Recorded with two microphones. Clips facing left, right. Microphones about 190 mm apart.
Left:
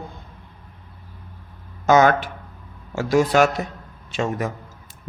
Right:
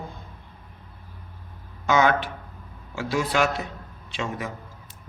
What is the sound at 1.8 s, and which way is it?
A man's voice, 45° left (ahead or behind).